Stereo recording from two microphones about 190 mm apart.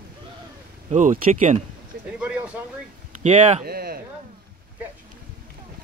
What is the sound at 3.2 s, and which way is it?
Speech, 40° right (ahead or behind).